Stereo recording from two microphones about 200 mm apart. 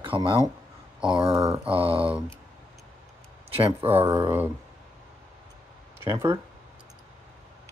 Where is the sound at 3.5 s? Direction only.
30° right (ahead or behind).